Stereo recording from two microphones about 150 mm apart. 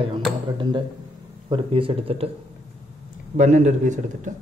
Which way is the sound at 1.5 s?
35° right (ahead or behind).